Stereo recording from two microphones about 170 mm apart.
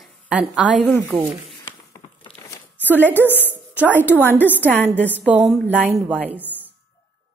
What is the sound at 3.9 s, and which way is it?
Speech, 10° right (ahead or behind).